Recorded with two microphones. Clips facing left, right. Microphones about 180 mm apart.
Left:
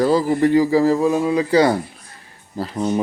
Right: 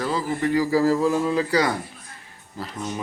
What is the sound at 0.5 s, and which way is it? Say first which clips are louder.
A man's voice: left 1 dB; 20° left (ahead or behind).